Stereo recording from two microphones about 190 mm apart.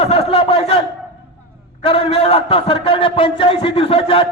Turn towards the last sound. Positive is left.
turn(degrees=30)  # may be behind; listen again after turning